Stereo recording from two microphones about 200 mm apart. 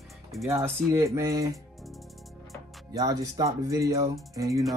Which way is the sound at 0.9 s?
15° right (ahead or behind).